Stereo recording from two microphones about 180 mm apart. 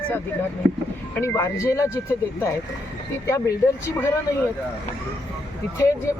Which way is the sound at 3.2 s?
15° left (ahead or behind).